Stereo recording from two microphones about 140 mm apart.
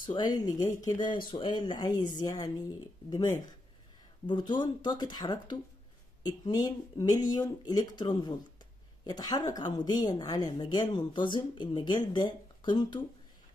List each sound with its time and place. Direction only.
0.0 s speech: 30° left (ahead or behind)